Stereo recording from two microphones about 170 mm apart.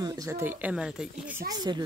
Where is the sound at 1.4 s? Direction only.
25° right (ahead or behind).